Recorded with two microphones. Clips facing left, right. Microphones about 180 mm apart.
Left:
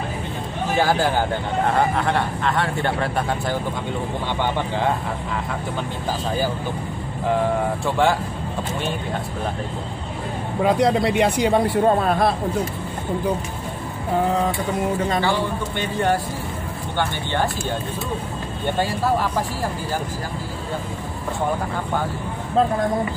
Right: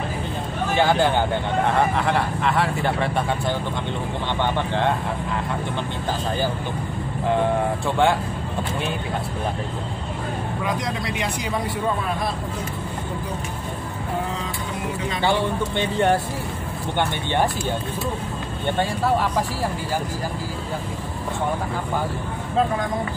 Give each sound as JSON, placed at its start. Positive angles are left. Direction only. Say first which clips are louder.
{"t": 0.7, "sound": "speech", "louder": "right 1 dB", "side_deg": 5}
{"t": 7.8, "sound": "speech", "louder": "left 1 dB", "side_deg": 0}
{"t": 10.6, "sound": "a man's voice", "louder": "left 12 dB", "side_deg": 65}